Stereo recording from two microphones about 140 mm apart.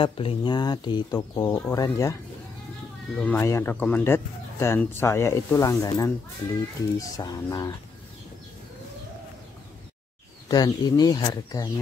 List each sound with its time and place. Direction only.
0.0 s speech: 40° left (ahead or behind); by 2.1 s 20° left (ahead or behind)
3.2 s speech: 15° left (ahead or behind)
10.5 s speech: 30° left (ahead or behind)